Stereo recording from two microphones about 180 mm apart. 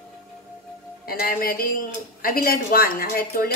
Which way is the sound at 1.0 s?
55° left (ahead or behind).